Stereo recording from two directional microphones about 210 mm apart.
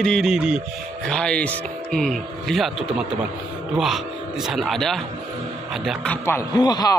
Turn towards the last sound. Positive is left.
turn(degrees=20)  # may be behind; listen again after turning